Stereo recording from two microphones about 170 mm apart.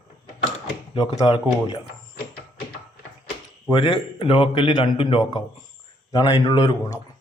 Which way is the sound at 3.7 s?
25° left (ahead or behind).